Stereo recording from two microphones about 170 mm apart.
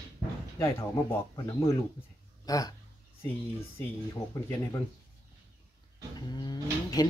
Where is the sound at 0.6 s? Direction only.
20° left (ahead or behind).